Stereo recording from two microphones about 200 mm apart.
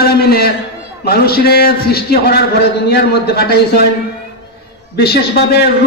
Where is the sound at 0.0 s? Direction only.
50° left (ahead or behind).